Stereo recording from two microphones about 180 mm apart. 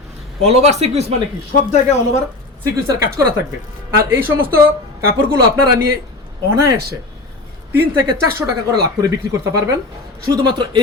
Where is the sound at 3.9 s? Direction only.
15° right (ahead or behind).